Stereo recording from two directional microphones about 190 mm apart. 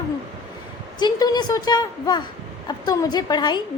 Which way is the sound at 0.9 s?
20° left (ahead or behind).